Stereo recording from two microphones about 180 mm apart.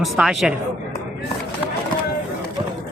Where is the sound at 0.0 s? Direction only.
Centre (ahead or behind).